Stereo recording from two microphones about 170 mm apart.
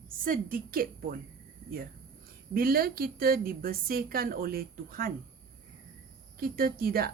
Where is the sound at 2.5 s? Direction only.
60° right (ahead or behind).